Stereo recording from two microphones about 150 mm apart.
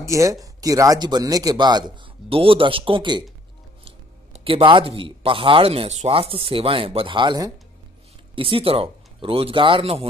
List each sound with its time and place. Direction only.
0.0 s speech: 20° right (ahead or behind)
8.4 s speech: 35° right (ahead or behind)